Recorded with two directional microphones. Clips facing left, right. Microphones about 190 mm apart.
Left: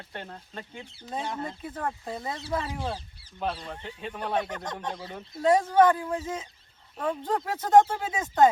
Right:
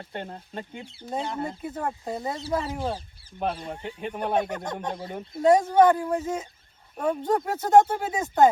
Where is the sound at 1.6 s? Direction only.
15° right (ahead or behind).